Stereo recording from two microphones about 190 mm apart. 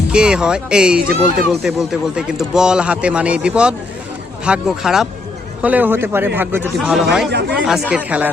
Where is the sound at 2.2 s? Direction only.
5° right (ahead or behind).